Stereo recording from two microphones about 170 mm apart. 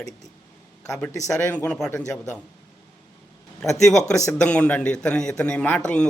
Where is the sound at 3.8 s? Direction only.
Centre (ahead or behind).